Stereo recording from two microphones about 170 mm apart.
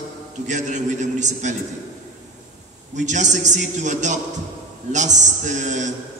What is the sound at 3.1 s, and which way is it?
A man's voice, 45° right (ahead or behind).